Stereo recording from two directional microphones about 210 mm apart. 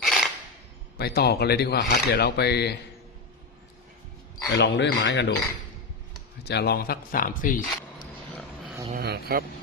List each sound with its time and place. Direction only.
0.0 s a sound: centre (ahead or behind)
0.9 s speech: 50° left (ahead or behind)
4.5 s speech: 55° left (ahead or behind)
6.4 s speech: 50° left (ahead or behind)
8.3 s a sound: 5° left (ahead or behind)
9.0 s speech: 45° right (ahead or behind)